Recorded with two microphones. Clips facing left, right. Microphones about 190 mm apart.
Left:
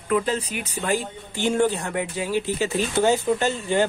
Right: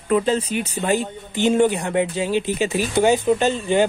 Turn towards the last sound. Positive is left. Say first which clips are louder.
# right 4 dB
turn(degrees=-20)  # may be behind; listen again after turning